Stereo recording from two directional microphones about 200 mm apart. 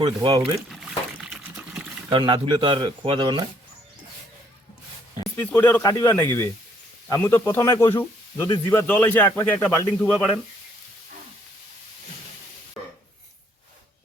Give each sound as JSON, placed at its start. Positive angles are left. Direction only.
{"t": 0.0, "sound": "speech", "side_deg": -25}
{"t": 1.2, "sound": "water", "side_deg": -5}
{"t": 2.0, "sound": "speech", "side_deg": -20}
{"t": 5.5, "sound": "speech", "side_deg": 10}